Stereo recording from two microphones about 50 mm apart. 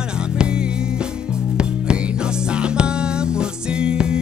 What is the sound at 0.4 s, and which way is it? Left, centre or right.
Music, centre.